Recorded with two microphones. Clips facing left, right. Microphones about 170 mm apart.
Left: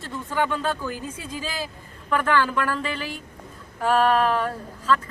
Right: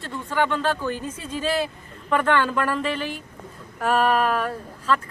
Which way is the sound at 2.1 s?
5° left (ahead or behind).